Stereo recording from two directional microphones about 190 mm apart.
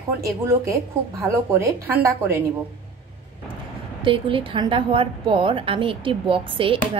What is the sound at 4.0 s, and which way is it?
A woman's voice, 25° right (ahead or behind).